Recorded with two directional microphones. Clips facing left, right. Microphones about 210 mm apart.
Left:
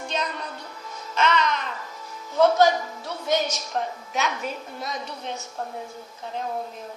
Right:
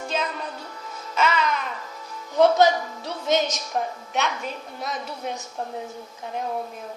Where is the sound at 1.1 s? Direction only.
5° right (ahead or behind).